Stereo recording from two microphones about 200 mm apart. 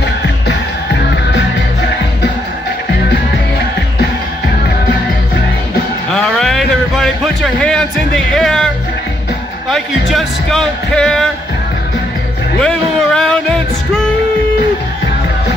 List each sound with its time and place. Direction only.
0.5 s music: 60° left (ahead or behind)
6.1 s a sound: 5° left (ahead or behind)
9.7 s music: centre (ahead or behind)
12.5 s music: 5° left (ahead or behind)